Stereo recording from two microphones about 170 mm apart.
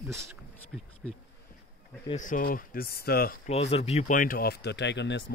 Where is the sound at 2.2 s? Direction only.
55° left (ahead or behind).